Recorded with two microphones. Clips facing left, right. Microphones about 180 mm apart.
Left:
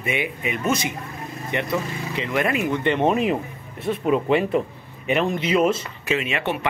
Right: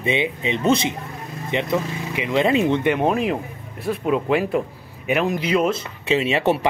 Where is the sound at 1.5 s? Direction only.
15° right (ahead or behind).